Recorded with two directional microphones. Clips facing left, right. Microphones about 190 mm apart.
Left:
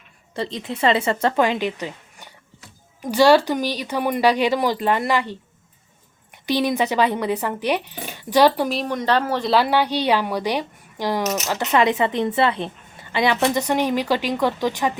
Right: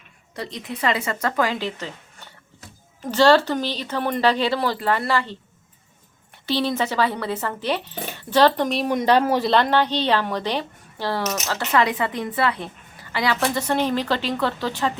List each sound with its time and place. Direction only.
0.3 s a woman's voice: 25° left (ahead or behind); by 8.9 s 5° left (ahead or behind)
8.9 s speech: 15° right (ahead or behind)
9.5 s a woman's voice: 10° left (ahead or behind)